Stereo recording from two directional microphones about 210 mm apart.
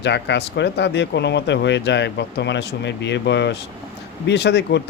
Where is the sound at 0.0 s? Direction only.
55° left (ahead or behind).